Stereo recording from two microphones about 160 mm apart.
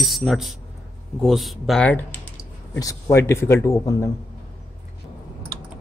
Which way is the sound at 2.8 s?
20° left (ahead or behind).